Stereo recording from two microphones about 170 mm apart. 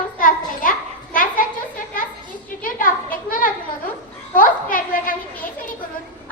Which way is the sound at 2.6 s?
55° left (ahead or behind).